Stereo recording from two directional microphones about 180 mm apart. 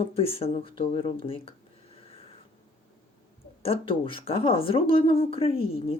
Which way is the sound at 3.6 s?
30° left (ahead or behind).